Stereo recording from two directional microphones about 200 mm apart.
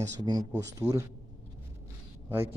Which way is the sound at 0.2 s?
20° right (ahead or behind).